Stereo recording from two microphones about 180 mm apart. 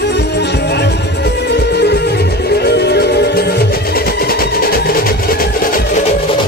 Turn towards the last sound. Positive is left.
turn(degrees=55)  # may be behind; listen again after turning